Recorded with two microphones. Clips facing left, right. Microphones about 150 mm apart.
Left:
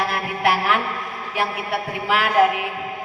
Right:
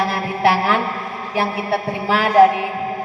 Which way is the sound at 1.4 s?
30° right (ahead or behind).